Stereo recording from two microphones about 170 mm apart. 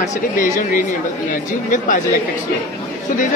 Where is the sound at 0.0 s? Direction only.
55° left (ahead or behind).